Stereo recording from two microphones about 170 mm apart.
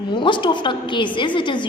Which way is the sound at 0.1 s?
30° left (ahead or behind).